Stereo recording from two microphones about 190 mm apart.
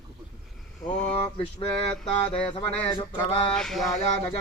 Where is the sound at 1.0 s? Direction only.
30° left (ahead or behind).